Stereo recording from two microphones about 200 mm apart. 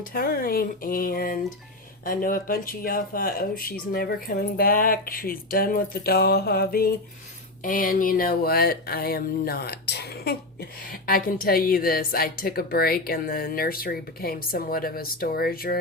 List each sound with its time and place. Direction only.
0.0 s speech: 45° left (ahead or behind)